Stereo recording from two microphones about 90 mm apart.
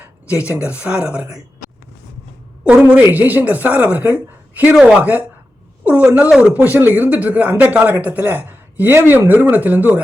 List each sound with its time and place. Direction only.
0.0 s speech: 15° right (ahead or behind)
2.6 s a woman's voice: 15° right (ahead or behind)
4.7 s a man's voice: 10° right (ahead or behind)